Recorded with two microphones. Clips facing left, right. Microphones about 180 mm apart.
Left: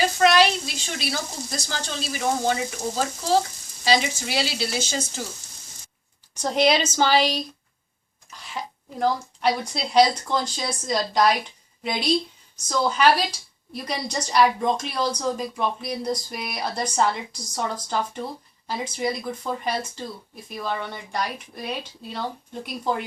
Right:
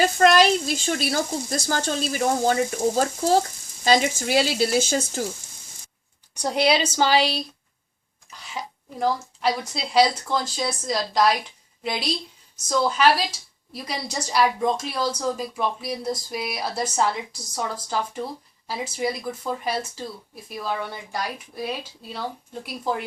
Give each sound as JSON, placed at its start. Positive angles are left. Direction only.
{"t": 0.2, "sound": "speech", "side_deg": -45}
{"t": 6.4, "sound": "a woman's voice", "side_deg": -10}
{"t": 8.6, "sound": "throat clearing", "side_deg": -15}
{"t": 9.0, "sound": "a woman's voice", "side_deg": 0}